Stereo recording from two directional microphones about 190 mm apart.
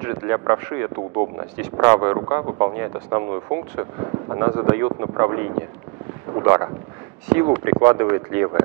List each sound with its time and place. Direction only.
0.0 s speech: 10° right (ahead or behind)